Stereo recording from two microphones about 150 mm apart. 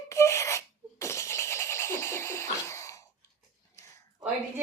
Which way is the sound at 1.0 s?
20° left (ahead or behind).